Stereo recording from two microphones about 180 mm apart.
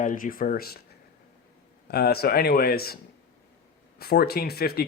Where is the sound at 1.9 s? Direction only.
60° left (ahead or behind).